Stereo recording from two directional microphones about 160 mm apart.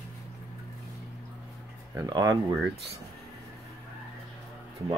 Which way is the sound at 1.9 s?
20° right (ahead or behind).